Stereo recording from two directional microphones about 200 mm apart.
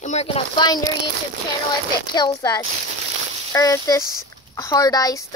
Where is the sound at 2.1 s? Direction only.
20° left (ahead or behind).